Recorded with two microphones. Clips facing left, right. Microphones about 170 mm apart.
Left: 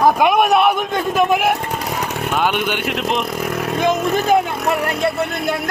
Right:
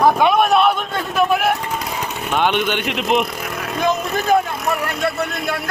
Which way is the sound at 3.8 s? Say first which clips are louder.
Left 2 dB; 20° left (ahead or behind).